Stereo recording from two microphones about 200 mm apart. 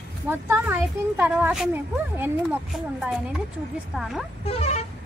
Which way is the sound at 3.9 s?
Centre (ahead or behind).